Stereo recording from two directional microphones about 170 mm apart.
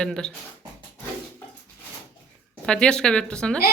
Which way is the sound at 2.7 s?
5° left (ahead or behind).